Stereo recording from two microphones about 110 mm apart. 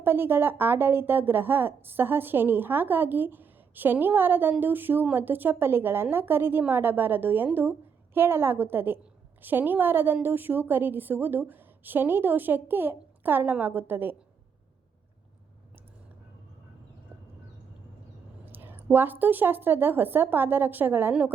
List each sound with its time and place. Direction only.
0.0 s a woman's voice: 20° right (ahead or behind)
18.4 s a woman's voice: 20° right (ahead or behind)